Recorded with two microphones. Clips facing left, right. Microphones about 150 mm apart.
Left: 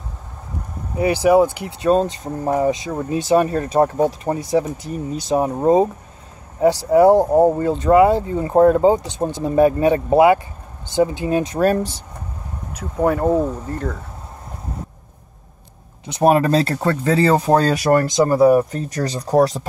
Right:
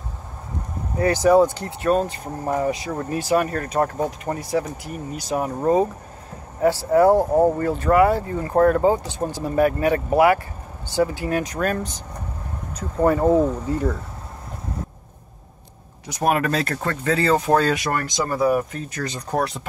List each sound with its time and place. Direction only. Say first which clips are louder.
0.9 s speech: left 2 dB; 10° left (ahead or behind)
1.9 s speech: left 4 dB; 25° left (ahead or behind)
3.2 s speech: left 5 dB; 25° left (ahead or behind)
12.7 s speech: even; 5° left (ahead or behind)
16.1 s speech: left 6 dB; 25° left (ahead or behind)